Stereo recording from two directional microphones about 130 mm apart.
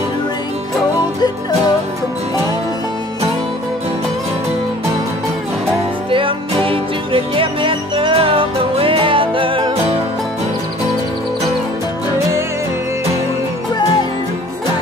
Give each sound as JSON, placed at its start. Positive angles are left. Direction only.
{"t": 6.0, "sound": "music", "side_deg": -45}